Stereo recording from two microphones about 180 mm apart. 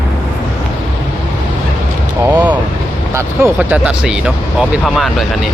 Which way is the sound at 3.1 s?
10° right (ahead or behind).